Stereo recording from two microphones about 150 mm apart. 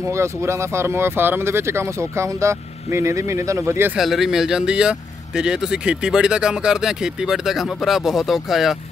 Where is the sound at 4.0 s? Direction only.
Centre (ahead or behind).